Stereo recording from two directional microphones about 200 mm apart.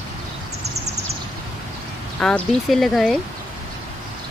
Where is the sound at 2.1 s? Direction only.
5° left (ahead or behind).